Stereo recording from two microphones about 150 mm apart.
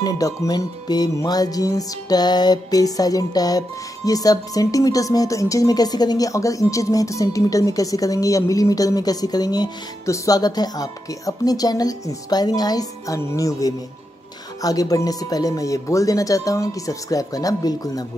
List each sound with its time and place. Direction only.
0.0 s music: 25° left (ahead or behind)